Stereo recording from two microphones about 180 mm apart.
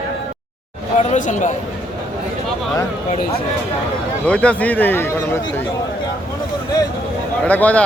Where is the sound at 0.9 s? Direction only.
45° left (ahead or behind).